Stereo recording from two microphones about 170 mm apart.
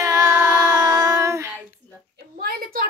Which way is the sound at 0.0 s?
20° right (ahead or behind).